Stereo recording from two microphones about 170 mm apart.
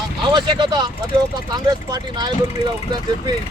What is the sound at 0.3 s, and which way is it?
Speech, 25° right (ahead or behind).